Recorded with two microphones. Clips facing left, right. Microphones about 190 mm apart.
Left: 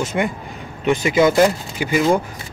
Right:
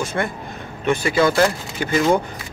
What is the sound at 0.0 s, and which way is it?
Speech, 15° left (ahead or behind).